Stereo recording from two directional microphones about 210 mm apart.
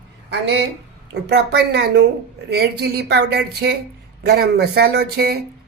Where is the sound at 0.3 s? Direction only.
55° right (ahead or behind).